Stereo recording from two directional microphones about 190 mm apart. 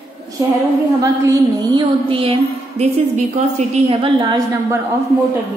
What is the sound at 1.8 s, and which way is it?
Music, 30° right (ahead or behind).